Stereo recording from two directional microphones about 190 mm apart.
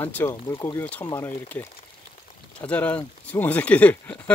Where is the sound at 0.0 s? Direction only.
10° left (ahead or behind).